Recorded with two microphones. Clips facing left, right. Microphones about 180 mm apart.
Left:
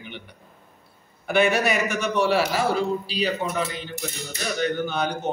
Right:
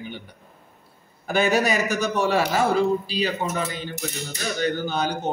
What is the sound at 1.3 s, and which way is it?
Speech, 40° right (ahead or behind).